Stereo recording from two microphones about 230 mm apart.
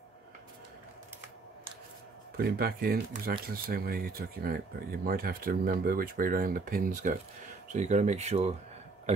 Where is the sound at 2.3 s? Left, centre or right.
Right.